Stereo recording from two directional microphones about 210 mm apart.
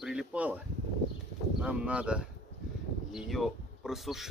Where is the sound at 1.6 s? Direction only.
5° right (ahead or behind).